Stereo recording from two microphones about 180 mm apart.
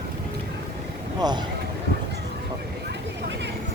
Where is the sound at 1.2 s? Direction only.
20° right (ahead or behind).